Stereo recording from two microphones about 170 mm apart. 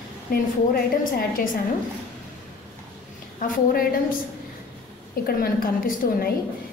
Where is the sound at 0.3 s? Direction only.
60° left (ahead or behind).